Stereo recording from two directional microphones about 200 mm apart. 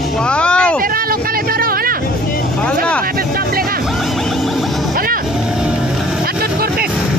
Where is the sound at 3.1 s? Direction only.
45° right (ahead or behind).